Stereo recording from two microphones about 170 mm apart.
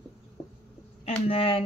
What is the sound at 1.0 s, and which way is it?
Speech, 35° left (ahead or behind).